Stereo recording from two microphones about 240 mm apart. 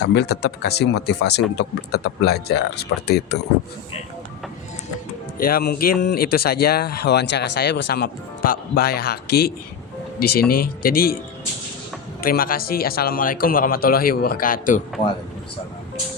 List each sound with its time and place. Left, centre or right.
0.0 s speech: left
5.4 s speech: left
12.2 s speech: left